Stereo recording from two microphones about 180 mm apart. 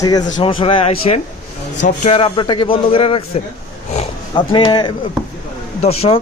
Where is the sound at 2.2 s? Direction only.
25° left (ahead or behind).